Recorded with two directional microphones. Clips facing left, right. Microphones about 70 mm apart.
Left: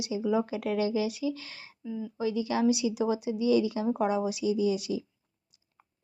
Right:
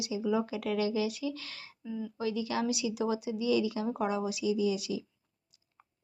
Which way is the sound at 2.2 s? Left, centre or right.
Left.